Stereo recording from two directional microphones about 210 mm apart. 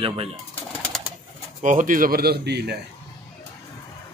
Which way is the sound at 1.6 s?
35° right (ahead or behind).